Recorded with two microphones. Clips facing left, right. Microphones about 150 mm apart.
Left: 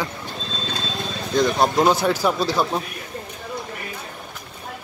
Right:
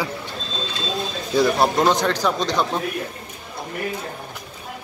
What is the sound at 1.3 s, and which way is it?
Speech, 5° right (ahead or behind).